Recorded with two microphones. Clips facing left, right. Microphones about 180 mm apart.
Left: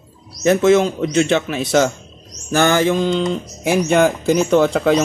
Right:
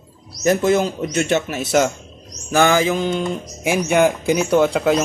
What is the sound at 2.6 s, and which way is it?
Speech, 5° right (ahead or behind).